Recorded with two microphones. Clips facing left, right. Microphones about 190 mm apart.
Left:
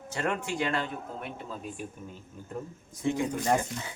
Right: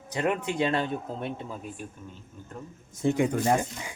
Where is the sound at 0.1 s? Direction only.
20° right (ahead or behind).